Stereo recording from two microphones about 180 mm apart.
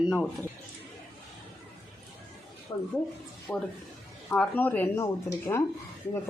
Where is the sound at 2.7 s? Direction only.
15° left (ahead or behind).